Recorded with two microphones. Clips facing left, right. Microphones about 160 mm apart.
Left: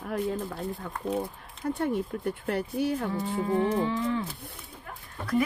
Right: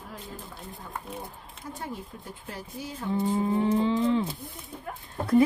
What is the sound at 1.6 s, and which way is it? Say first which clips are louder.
Speech: left 10 dB; 65° left (ahead or behind).